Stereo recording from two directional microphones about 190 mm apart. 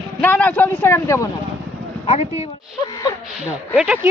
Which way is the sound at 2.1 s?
35° left (ahead or behind).